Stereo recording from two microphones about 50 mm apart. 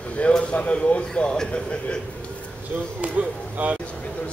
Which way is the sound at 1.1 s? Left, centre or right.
Centre.